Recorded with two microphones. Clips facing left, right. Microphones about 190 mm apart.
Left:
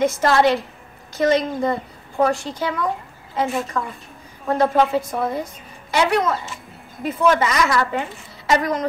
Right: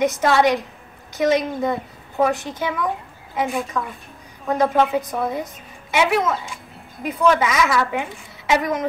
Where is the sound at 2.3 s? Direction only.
20° right (ahead or behind).